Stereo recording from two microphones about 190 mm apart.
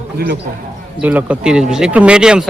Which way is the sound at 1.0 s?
10° right (ahead or behind).